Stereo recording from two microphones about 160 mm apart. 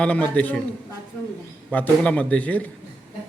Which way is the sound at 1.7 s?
10° left (ahead or behind).